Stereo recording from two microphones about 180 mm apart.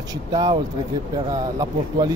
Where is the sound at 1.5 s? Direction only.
25° right (ahead or behind).